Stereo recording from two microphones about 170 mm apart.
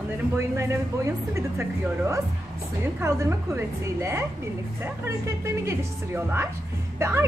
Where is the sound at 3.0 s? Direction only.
15° right (ahead or behind).